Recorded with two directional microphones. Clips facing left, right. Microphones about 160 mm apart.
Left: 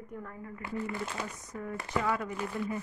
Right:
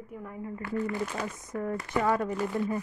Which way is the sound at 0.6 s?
20° left (ahead or behind).